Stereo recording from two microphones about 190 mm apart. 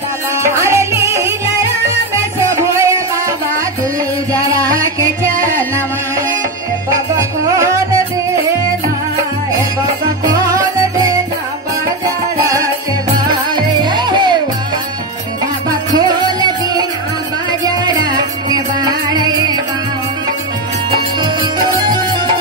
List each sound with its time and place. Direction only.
0.6 s music: 15° right (ahead or behind)
4.3 s music: 15° right (ahead or behind)
7.2 s music: 15° right (ahead or behind)
13.3 s music: 25° right (ahead or behind)
16.2 s music: 25° right (ahead or behind)